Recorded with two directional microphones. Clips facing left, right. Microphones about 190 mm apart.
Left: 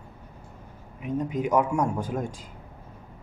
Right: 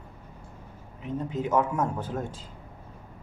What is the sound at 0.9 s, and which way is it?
Speech, 15° left (ahead or behind).